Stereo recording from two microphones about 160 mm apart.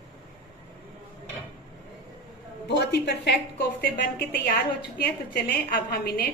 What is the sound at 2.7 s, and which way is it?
Speech, 90° left.